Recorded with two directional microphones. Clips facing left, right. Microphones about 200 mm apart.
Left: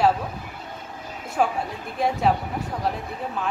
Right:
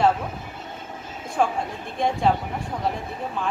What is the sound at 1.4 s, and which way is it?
Speech, 5° left (ahead or behind).